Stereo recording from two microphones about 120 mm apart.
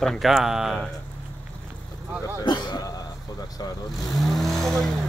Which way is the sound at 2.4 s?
35° left (ahead or behind).